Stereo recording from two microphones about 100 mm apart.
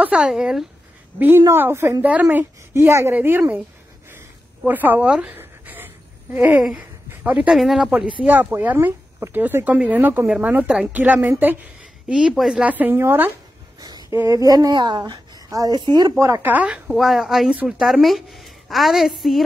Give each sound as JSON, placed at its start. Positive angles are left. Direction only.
{"t": 0.0, "sound": "speech", "side_deg": -10}
{"t": 1.5, "sound": "speech", "side_deg": -25}
{"t": 2.0, "sound": "speech", "side_deg": -15}
{"t": 2.7, "sound": "speech", "side_deg": -30}
{"t": 4.6, "sound": "a woman's voice", "side_deg": -20}
{"t": 8.2, "sound": "speech", "side_deg": -15}
{"t": 11.0, "sound": "speech", "side_deg": -20}
{"t": 12.1, "sound": "speech", "side_deg": -10}
{"t": 12.6, "sound": "speech", "side_deg": -20}
{"t": 13.7, "sound": "a sound", "side_deg": -45}
{"t": 14.2, "sound": "a woman's voice", "side_deg": -35}
{"t": 16.2, "sound": "speech", "side_deg": -25}
{"t": 16.9, "sound": "a woman's voice", "side_deg": 0}